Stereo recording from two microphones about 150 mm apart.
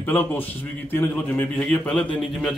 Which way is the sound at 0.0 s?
10° left (ahead or behind).